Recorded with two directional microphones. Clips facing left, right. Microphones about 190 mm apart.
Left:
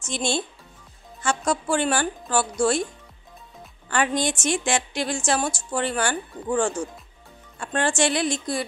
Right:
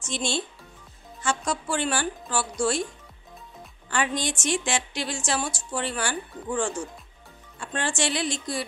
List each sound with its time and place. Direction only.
0.1 s a woman's voice: 50° left (ahead or behind)
3.9 s a woman's voice: 50° left (ahead or behind)